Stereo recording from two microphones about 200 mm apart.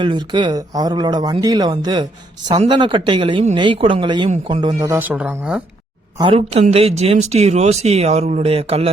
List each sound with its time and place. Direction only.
0.0 s speech: 25° right (ahead or behind)
4.8 s speech: 10° right (ahead or behind)
6.1 s speech: 25° right (ahead or behind)